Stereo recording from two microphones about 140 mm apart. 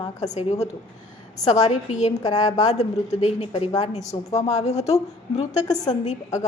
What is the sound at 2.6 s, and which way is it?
Speech, 55° left (ahead or behind).